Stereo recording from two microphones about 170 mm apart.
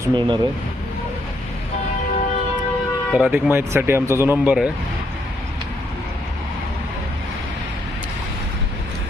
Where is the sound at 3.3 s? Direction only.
10° right (ahead or behind).